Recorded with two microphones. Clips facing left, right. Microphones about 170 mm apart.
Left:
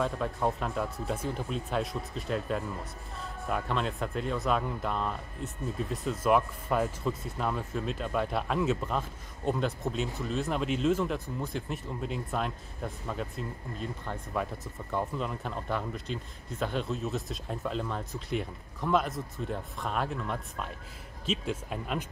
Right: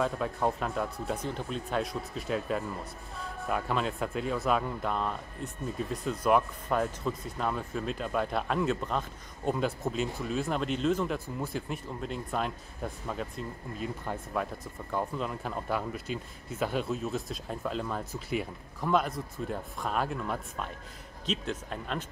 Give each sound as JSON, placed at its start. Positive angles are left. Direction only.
{"t": 0.0, "sound": "speech", "side_deg": 0}